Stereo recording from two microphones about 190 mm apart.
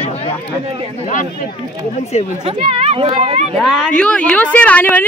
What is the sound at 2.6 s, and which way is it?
Speech, 30° right (ahead or behind).